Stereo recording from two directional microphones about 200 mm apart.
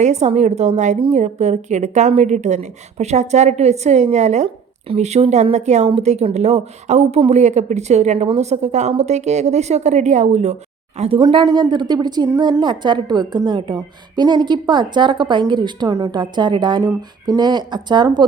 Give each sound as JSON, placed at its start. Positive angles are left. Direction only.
{"t": 0.0, "sound": "a woman's voice", "side_deg": -35}